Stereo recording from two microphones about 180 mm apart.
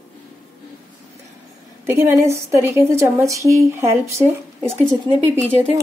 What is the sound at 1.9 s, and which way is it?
A woman's voice, 15° right (ahead or behind).